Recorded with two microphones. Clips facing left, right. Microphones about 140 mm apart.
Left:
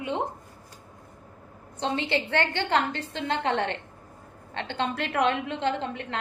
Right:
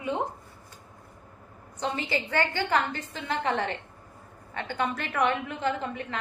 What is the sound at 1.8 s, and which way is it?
A woman's voice, 25° left (ahead or behind).